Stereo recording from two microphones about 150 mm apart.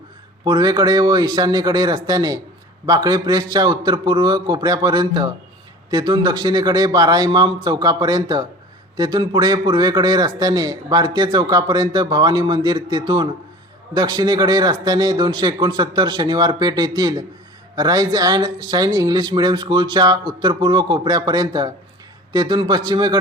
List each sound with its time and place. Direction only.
0.4 s a man's voice: 30° right (ahead or behind)